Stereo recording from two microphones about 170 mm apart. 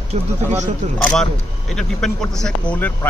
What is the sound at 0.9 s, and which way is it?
Speech, 5° left (ahead or behind).